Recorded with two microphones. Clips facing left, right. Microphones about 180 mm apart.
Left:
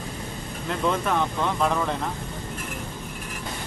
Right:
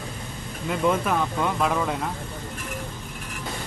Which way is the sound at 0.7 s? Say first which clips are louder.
Right 2 dB; 5° right (ahead or behind).